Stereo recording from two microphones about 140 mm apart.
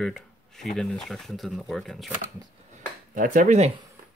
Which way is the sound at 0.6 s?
5° left (ahead or behind).